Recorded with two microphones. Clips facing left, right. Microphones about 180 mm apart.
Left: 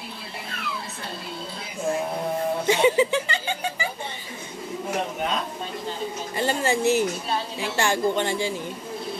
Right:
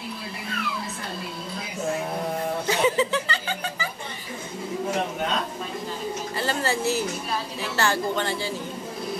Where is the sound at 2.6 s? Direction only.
20° left (ahead or behind).